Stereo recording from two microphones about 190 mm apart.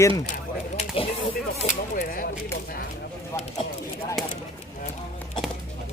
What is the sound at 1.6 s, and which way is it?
Speech, 45° left (ahead or behind).